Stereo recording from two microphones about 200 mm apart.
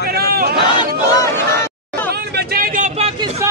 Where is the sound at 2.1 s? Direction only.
50° right (ahead or behind); by 3.2 s 30° right (ahead or behind).